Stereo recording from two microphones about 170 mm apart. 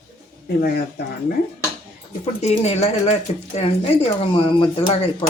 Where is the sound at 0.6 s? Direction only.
65° left (ahead or behind).